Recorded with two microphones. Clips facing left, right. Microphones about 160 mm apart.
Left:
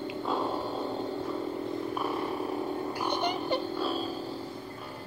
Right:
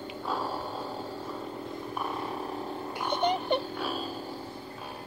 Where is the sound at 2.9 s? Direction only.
25° right (ahead or behind).